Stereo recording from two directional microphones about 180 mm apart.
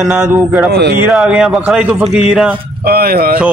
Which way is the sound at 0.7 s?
65° right (ahead or behind).